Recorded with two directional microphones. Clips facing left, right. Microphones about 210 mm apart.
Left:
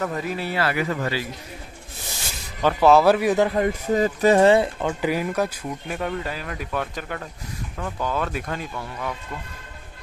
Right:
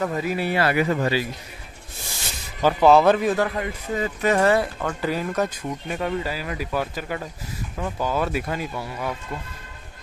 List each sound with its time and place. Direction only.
0.0 s speech: 5° right (ahead or behind)
0.4 s speech: 15° right (ahead or behind)
2.6 s speech: centre (ahead or behind)
3.4 s speech: 35° left (ahead or behind)
4.8 s speech: 15° left (ahead or behind)
5.9 s speech: 5° right (ahead or behind)